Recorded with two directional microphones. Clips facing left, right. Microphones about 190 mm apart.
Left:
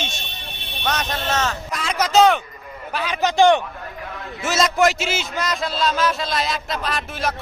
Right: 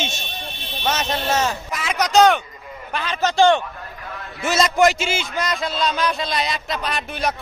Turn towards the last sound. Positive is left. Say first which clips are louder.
# right 1 dB
turn(degrees=0)  # may be behind; listen again after turning